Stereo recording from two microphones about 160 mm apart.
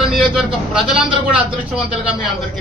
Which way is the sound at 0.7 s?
5° right (ahead or behind).